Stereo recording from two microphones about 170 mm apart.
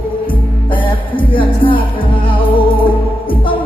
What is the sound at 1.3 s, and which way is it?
Music, 30° left (ahead or behind).